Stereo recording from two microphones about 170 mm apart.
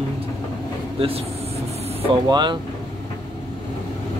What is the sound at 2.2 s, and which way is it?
Speech, 25° right (ahead or behind).